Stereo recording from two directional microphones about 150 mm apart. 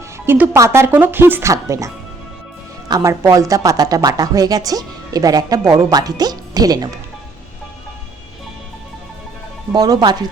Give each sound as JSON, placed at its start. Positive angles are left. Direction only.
{"t": 0.3, "sound": "speech", "side_deg": -15}
{"t": 2.9, "sound": "a woman's voice", "side_deg": -20}
{"t": 9.7, "sound": "a woman's voice", "side_deg": -25}